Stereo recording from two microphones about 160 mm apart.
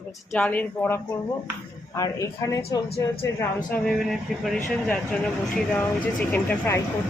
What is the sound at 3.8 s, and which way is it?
Speech, centre (ahead or behind).